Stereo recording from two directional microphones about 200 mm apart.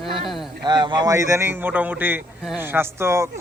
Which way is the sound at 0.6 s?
20° right (ahead or behind).